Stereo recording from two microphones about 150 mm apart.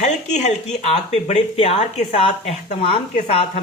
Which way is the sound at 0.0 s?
50° left (ahead or behind).